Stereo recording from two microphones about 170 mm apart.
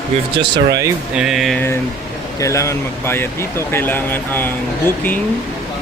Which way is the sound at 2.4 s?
20° left (ahead or behind).